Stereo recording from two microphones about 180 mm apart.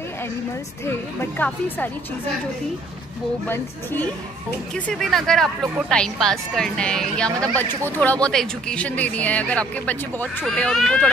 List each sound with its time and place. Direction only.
0.8 s speech: 10° left (ahead or behind)
3.4 s speech: 10° left (ahead or behind)